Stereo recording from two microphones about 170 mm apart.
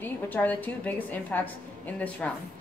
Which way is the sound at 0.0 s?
10° left (ahead or behind).